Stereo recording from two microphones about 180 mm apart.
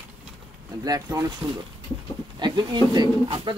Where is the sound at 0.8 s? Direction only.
20° right (ahead or behind).